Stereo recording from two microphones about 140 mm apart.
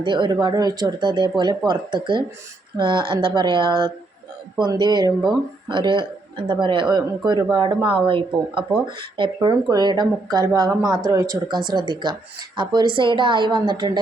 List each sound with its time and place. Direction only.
0.0 s speech: 35° right (ahead or behind)